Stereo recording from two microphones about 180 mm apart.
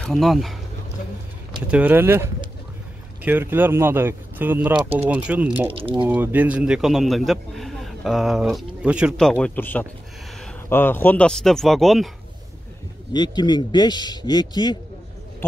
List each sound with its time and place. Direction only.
0.0 s a man's voice: centre (ahead or behind)
1.7 s speech: 10° right (ahead or behind)
5.7 s speech: 30° right (ahead or behind)
6.0 s a man's voice: 10° right (ahead or behind)
9.4 s a man's voice: 10° left (ahead or behind)
13.1 s speech: 25° left (ahead or behind)